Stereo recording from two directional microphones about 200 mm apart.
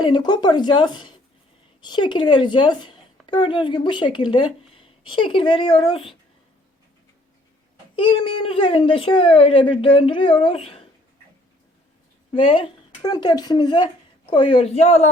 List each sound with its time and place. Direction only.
0.0 s a woman's voice: 20° left (ahead or behind)
7.9 s a woman's voice: 25° left (ahead or behind)
12.3 s speech: 25° left (ahead or behind)